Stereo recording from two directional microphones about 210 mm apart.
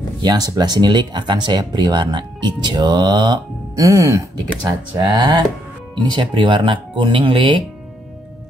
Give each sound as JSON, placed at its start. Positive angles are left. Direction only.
{"t": 0.2, "sound": "speech", "side_deg": -20}